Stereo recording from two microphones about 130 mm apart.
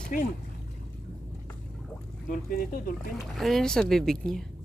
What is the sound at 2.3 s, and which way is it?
Speech, 90° left.